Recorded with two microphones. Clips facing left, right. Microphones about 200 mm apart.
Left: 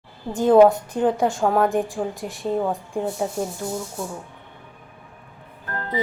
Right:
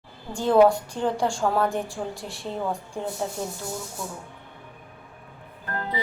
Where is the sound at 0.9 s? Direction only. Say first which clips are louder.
Left 5 dB; 10° left (ahead or behind).